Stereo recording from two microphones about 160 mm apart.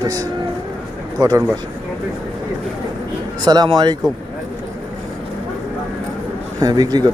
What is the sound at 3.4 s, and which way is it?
Speech, 25° right (ahead or behind).